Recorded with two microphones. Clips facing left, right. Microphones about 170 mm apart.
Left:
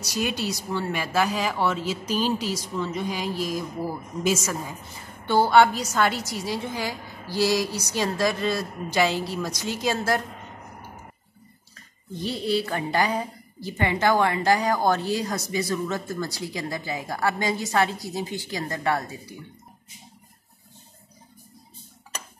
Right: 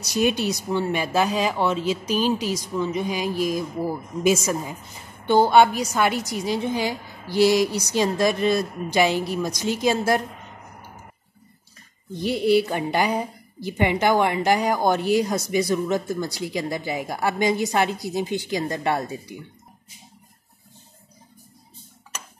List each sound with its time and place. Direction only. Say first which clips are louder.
0.0 s a woman's voice: right 6 dB; 20° right (ahead or behind)
12.2 s a woman's voice: right 6 dB; 15° right (ahead or behind)